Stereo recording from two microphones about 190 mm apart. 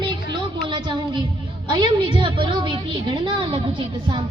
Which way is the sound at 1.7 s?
25° right (ahead or behind).